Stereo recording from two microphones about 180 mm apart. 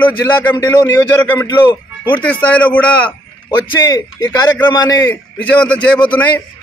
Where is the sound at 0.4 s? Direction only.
15° left (ahead or behind).